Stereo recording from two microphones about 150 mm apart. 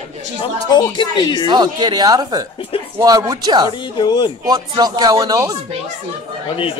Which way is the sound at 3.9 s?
35° left (ahead or behind).